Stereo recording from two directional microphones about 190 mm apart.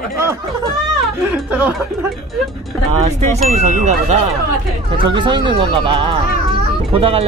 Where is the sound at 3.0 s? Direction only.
35° right (ahead or behind).